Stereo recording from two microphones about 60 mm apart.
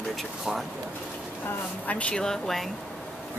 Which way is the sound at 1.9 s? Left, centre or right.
Left.